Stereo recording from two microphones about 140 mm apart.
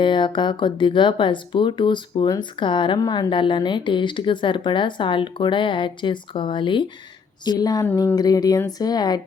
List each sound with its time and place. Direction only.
0.0 s a woman's voice: 35° left (ahead or behind)